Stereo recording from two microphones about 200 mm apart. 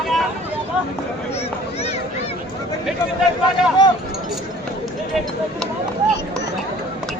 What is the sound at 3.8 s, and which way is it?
Chink, 20° left (ahead or behind).